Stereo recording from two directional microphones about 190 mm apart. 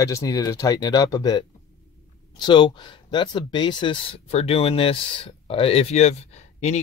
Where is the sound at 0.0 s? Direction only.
15° left (ahead or behind).